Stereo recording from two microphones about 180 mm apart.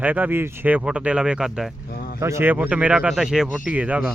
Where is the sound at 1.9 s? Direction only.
60° left (ahead or behind).